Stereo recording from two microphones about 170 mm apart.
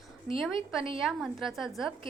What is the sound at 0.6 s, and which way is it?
Speech, 30° right (ahead or behind).